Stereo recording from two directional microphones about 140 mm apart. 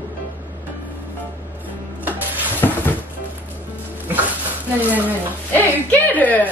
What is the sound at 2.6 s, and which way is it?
Music, 20° left (ahead or behind).